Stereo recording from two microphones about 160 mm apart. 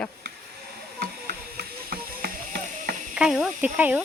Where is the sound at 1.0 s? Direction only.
70° right (ahead or behind).